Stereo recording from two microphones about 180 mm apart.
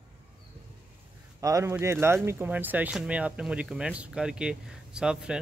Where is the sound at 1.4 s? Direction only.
20° right (ahead or behind).